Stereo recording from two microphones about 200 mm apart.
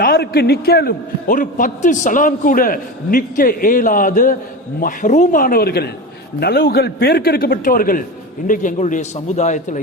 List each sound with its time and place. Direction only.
0.0 s a man's voice: 55° left (ahead or behind); by 9.8 s 35° left (ahead or behind)